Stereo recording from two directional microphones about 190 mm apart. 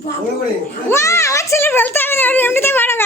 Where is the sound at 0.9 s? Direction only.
15° left (ahead or behind).